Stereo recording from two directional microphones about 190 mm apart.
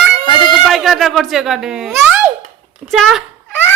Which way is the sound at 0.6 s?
Centre (ahead or behind).